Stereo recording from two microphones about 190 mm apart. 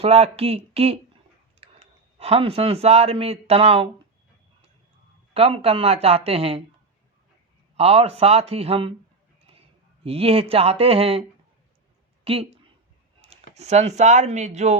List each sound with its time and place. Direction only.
0.0 s speech: 35° right (ahead or behind)
5.3 s speech: 30° right (ahead or behind)
7.8 s speech: 30° right (ahead or behind)
10.0 s speech: 30° right (ahead or behind)